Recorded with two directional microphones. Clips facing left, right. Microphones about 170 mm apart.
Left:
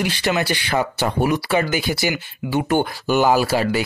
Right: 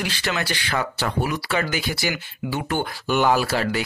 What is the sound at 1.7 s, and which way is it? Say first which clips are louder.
Speech: left 4 dB; 50° left (ahead or behind).